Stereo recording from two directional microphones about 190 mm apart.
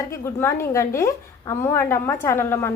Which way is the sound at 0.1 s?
15° left (ahead or behind).